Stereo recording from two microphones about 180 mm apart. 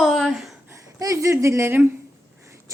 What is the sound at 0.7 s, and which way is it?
A woman's voice, 15° right (ahead or behind).